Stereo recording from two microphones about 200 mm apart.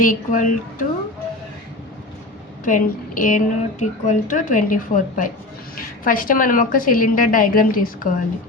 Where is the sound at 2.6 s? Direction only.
40° left (ahead or behind).